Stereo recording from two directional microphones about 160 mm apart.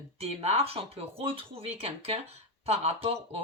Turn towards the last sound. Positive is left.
turn(degrees=-40)  # may be behind; listen again after turning